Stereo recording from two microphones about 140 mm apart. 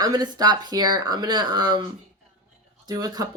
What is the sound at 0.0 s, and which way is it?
Speech, 30° right (ahead or behind).